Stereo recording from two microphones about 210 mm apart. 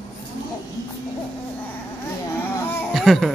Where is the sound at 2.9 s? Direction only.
Centre (ahead or behind).